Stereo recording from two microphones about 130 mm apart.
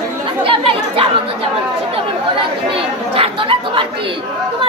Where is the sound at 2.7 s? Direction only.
45° right (ahead or behind).